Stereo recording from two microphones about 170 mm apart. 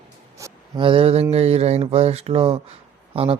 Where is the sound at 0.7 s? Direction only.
30° right (ahead or behind).